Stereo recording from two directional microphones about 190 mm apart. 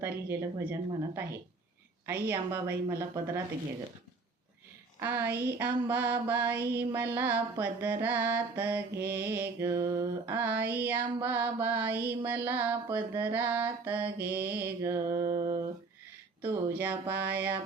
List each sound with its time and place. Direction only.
0.0 s mantra: 10° right (ahead or behind)
4.9 s mantra: 10° right (ahead or behind)
16.4 s mantra: 10° right (ahead or behind)